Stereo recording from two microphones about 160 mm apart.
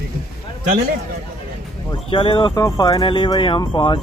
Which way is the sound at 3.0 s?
30° left (ahead or behind).